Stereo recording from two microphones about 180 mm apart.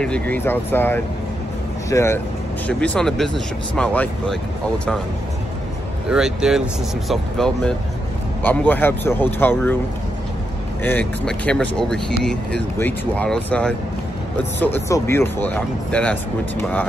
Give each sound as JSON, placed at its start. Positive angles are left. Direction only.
{"t": 0.0, "sound": "speech", "side_deg": 5}
{"t": 6.0, "sound": "speech", "side_deg": -5}
{"t": 10.8, "sound": "speech", "side_deg": 10}